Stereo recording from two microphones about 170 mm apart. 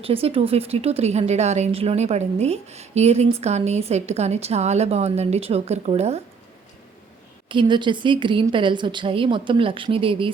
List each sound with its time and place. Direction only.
0.0 s speech: 35° right (ahead or behind)
7.4 s a woman's voice: 30° right (ahead or behind)